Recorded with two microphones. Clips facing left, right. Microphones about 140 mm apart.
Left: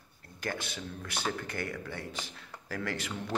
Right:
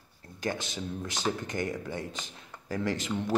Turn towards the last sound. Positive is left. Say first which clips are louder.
# right 5 dB
turn(degrees=-20)  # may be behind; listen again after turning